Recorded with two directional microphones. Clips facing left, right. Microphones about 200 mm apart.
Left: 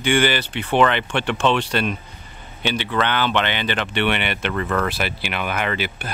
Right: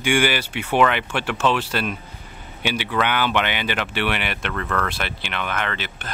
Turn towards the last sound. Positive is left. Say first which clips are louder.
# left 4 dB
turn(degrees=10)  # may be behind; listen again after turning